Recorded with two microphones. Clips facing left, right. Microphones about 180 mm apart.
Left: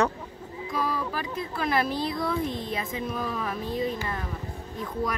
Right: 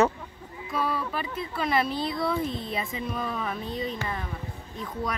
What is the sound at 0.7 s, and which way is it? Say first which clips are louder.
Speech: even; centre (ahead or behind).